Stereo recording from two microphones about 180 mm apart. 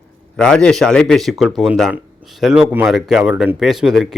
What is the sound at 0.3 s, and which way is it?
Speech, 5° left (ahead or behind).